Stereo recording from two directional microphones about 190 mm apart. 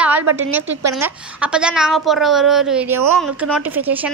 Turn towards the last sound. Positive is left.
turn(degrees=-10)  # may be behind; listen again after turning